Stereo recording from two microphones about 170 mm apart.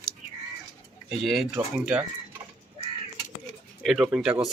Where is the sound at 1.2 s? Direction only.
Centre (ahead or behind).